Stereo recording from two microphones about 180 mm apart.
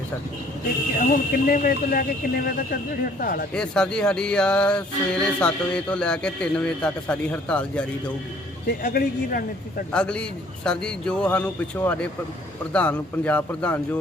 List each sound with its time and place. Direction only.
0.9 s speech: 50° left (ahead or behind)
3.5 s speech: 5° left (ahead or behind)
8.8 s speech: 55° left (ahead or behind)
9.9 s speech: 5° left (ahead or behind)